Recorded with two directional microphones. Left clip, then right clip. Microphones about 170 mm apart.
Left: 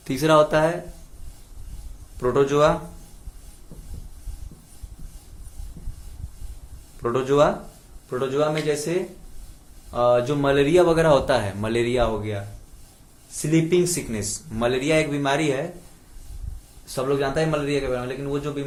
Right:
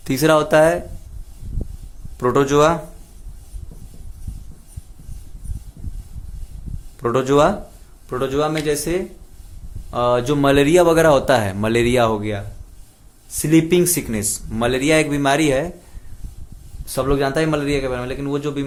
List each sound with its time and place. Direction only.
0.0 s speech: 45° right (ahead or behind)
2.1 s speech: 55° right (ahead or behind)
7.0 s speech: 60° right (ahead or behind)
9.9 s speech: 60° right (ahead or behind)
13.5 s speech: 65° right (ahead or behind)
13.8 s speech: centre (ahead or behind)
14.6 s speech: 55° right (ahead or behind)
16.8 s a man's voice: 65° right (ahead or behind)